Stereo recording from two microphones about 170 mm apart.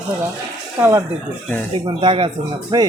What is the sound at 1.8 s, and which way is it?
Speech, 30° right (ahead or behind).